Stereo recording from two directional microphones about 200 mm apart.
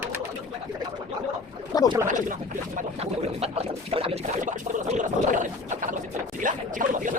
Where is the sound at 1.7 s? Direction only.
20° left (ahead or behind).